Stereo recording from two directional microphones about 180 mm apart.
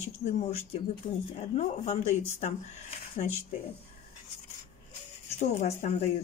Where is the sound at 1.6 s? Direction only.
40° left (ahead or behind).